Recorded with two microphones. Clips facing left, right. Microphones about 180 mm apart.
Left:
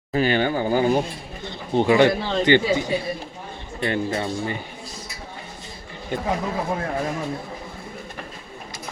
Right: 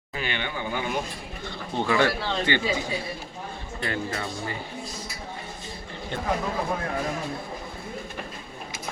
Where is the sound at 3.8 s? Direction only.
25° left (ahead or behind).